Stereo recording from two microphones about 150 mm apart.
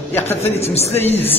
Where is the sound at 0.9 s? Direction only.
15° left (ahead or behind).